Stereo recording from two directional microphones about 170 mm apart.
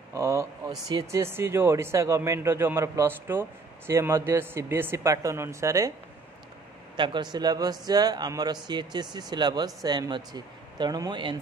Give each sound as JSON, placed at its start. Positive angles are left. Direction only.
{"t": 0.1, "sound": "speech", "side_deg": -15}
{"t": 7.0, "sound": "a man's voice", "side_deg": -25}